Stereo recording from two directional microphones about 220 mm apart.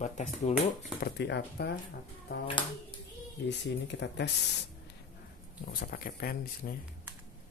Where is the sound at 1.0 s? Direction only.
50° left (ahead or behind).